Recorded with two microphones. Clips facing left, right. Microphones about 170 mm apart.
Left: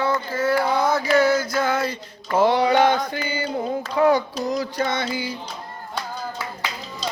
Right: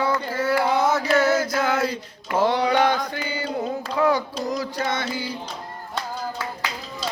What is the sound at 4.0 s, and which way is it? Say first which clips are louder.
Child singing: left 3 dB; 30° left (ahead or behind).